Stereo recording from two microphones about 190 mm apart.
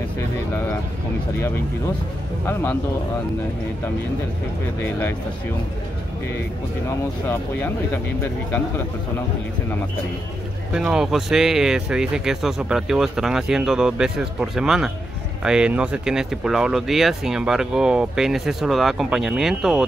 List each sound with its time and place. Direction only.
6.9 s speech: 10° left (ahead or behind)
10.7 s speech: 5° right (ahead or behind)